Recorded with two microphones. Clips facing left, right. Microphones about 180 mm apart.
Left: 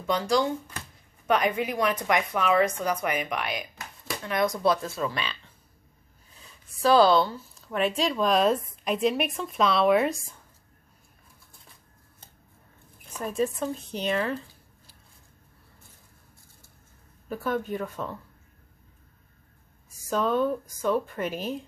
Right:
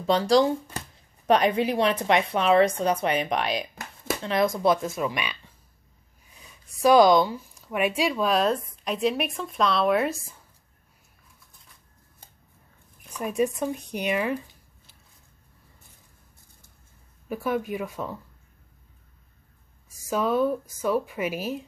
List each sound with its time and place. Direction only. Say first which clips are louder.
0.0 s speech: right 5 dB; 35° right (ahead or behind); by 10.2 s centre (ahead or behind)
13.2 s a woman's voice: right 2 dB; 15° right (ahead or behind)
17.3 s a woman's voice: right 1 dB; 10° right (ahead or behind)
20.1 s a woman's voice: right 1 dB; 10° right (ahead or behind)